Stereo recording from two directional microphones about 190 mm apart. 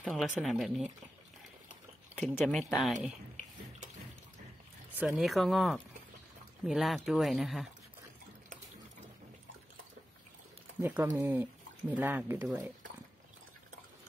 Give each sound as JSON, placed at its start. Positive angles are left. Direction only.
{"t": 0.0, "sound": "speech", "side_deg": 0}
{"t": 2.1, "sound": "speech", "side_deg": 0}
{"t": 4.9, "sound": "speech", "side_deg": -5}
{"t": 10.8, "sound": "speech", "side_deg": -10}